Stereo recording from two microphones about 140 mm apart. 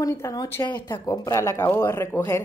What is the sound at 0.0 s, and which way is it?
A woman's voice, 25° left (ahead or behind).